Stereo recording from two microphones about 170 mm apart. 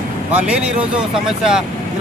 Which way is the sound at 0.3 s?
5° right (ahead or behind).